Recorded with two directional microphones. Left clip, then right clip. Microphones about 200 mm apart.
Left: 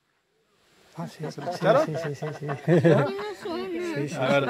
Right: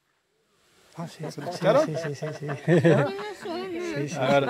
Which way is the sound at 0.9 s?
5° left (ahead or behind).